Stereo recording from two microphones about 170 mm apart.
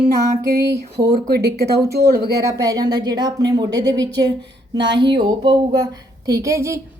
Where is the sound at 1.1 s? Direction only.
65° right (ahead or behind).